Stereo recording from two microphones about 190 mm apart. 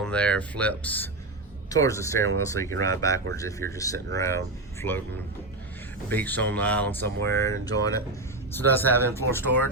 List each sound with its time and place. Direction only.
0.0 s speech: 5° left (ahead or behind)
6.1 s speech: 10° left (ahead or behind)